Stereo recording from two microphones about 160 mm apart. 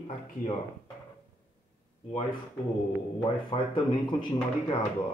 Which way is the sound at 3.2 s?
30° left (ahead or behind).